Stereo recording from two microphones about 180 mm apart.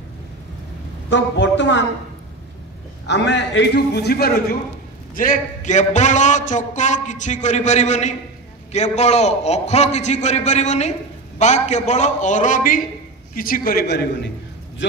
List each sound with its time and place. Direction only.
1.1 s a man's voice: 80° left
3.1 s a man's voice: 75° left (ahead or behind); by 4.3 s 60° left (ahead or behind)
5.1 s a man's voice: 50° left (ahead or behind)